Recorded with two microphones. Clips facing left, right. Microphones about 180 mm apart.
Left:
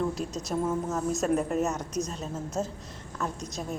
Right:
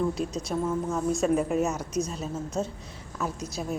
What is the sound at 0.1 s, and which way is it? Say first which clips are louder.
Speech: right 3 dB; 40° left (ahead or behind).